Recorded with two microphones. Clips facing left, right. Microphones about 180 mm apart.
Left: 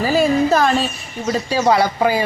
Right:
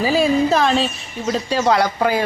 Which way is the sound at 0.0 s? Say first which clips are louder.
Left 1 dB; centre (ahead or behind).